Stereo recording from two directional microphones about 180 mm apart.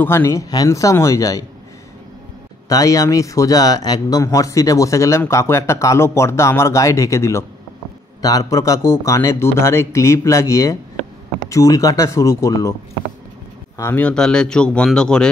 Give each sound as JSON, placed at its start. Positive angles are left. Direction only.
{"t": 0.0, "sound": "speech", "side_deg": 15}
{"t": 2.7, "sound": "speech", "side_deg": 20}
{"t": 13.7, "sound": "speech", "side_deg": 10}